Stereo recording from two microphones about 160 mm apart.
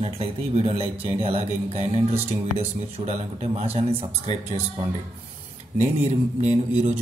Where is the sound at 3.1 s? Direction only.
40° right (ahead or behind).